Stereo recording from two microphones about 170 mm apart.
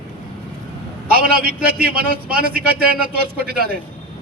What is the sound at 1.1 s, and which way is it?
A man's voice, 60° right (ahead or behind).